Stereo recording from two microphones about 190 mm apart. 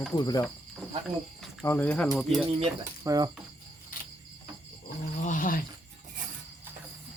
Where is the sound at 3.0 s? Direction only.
20° right (ahead or behind).